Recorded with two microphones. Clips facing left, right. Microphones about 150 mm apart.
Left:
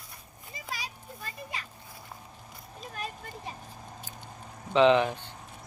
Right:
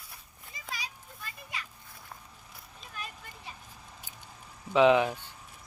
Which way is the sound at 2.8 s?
40° left (ahead or behind).